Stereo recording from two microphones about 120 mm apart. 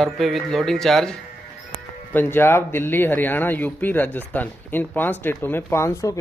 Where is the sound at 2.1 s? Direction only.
20° left (ahead or behind).